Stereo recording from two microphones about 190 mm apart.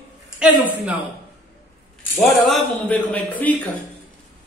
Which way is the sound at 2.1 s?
10° left (ahead or behind).